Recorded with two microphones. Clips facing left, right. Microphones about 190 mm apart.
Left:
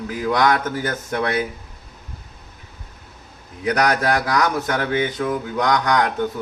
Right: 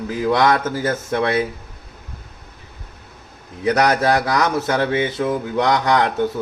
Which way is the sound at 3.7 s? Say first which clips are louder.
Right 3 dB; 25° right (ahead or behind).